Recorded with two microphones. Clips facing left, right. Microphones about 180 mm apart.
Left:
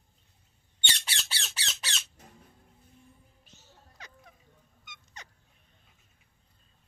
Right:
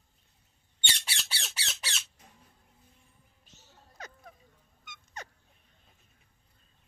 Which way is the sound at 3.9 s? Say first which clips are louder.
Right 6 dB; 45° right (ahead or behind).